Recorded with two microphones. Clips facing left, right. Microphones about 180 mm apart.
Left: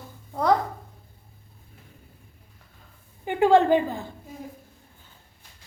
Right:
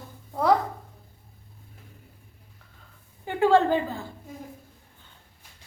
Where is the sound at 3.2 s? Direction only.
15° left (ahead or behind).